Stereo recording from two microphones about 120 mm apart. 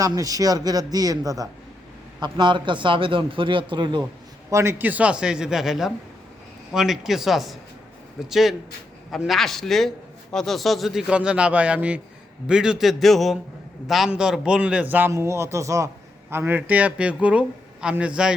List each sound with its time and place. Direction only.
0.0 s a man's voice: 30° right (ahead or behind)
2.2 s a man's voice: 40° right (ahead or behind)
4.5 s a man's voice: 20° right (ahead or behind)